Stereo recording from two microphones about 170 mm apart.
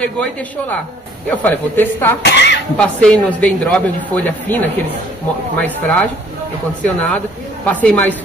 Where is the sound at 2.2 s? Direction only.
90° left.